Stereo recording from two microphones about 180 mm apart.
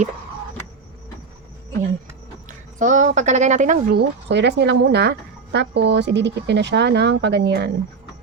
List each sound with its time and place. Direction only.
2.7 s speech: 45° right (ahead or behind)
3.9 s speech: 75° right (ahead or behind)